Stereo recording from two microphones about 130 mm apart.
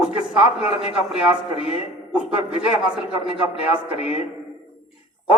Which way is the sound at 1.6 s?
45° left (ahead or behind).